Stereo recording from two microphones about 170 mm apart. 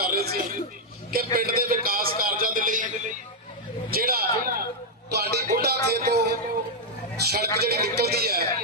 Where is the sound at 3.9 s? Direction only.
60° right (ahead or behind).